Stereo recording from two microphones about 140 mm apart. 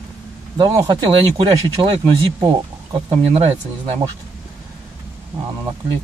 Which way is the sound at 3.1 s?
45° right (ahead or behind).